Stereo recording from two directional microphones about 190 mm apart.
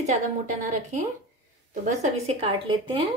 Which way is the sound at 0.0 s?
40° right (ahead or behind).